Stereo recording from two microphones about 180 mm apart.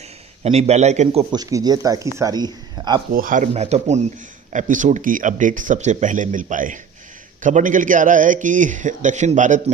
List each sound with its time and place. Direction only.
0.4 s a man's voice: 35° right (ahead or behind)
1.3 s speech: 20° right (ahead or behind)
3.1 s speech: 50° right (ahead or behind)